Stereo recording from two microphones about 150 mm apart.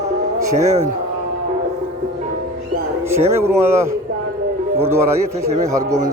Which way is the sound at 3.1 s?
15° right (ahead or behind).